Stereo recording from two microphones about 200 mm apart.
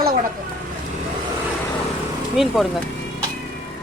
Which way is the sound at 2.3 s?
Centre (ahead or behind).